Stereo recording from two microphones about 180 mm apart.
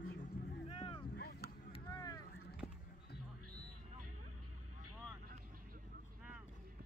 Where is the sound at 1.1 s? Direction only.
60° left (ahead or behind).